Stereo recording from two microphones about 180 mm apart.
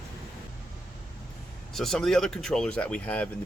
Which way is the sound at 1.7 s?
Centre (ahead or behind).